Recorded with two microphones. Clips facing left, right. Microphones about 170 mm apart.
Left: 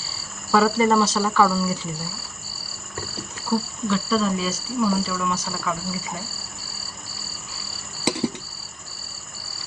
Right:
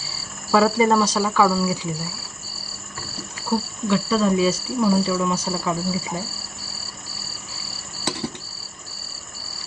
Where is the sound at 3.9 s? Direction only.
15° right (ahead or behind).